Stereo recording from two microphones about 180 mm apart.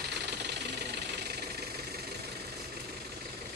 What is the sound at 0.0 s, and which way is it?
Engine, 70° right (ahead or behind).